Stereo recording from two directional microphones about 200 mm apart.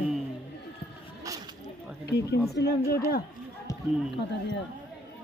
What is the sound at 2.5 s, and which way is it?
Speech, 50° left (ahead or behind).